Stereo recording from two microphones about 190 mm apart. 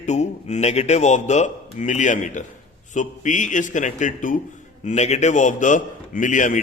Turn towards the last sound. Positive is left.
turn(degrees=40)  # may be behind; listen again after turning